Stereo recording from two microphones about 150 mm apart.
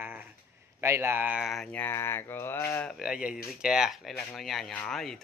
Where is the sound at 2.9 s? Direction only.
5° right (ahead or behind).